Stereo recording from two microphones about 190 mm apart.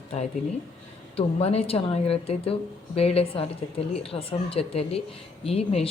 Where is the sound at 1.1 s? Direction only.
30° left (ahead or behind).